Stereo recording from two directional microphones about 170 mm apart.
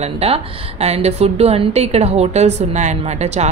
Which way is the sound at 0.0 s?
40° right (ahead or behind).